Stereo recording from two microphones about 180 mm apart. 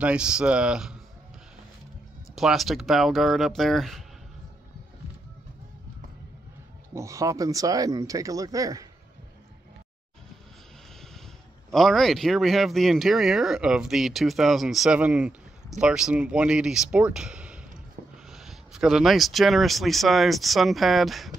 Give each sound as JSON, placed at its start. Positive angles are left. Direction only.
{"t": 0.0, "sound": "speech", "side_deg": -5}
{"t": 2.3, "sound": "speech", "side_deg": 0}
{"t": 6.9, "sound": "speech", "side_deg": -15}
{"t": 11.7, "sound": "speech", "side_deg": 0}